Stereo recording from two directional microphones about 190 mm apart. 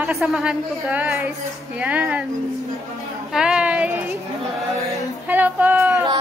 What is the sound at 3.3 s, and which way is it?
Speech, 5° right (ahead or behind).